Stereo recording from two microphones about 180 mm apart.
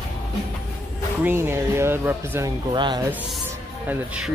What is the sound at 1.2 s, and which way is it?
Speech, 15° right (ahead or behind).